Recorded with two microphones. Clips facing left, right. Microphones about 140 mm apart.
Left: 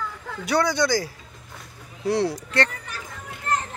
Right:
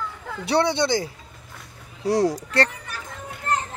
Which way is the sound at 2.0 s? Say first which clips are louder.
Right 2 dB; 40° right (ahead or behind).